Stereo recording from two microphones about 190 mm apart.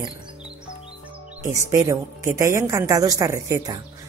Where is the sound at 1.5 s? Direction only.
15° right (ahead or behind).